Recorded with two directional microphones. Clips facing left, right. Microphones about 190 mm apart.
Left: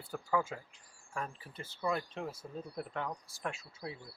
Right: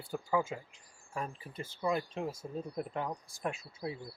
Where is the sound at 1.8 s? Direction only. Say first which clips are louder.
Right 2 dB; 25° right (ahead or behind).